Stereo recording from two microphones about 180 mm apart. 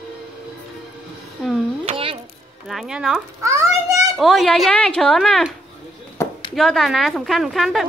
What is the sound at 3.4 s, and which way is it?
Speech, 15° right (ahead or behind).